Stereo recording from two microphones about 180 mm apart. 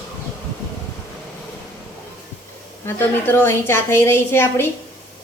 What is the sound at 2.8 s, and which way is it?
A woman's voice, 10° left (ahead or behind).